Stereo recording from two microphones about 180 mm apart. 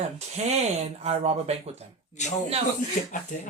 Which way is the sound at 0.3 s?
35° right (ahead or behind).